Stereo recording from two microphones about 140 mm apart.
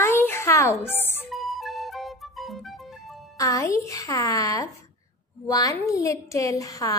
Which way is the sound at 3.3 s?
25° left (ahead or behind).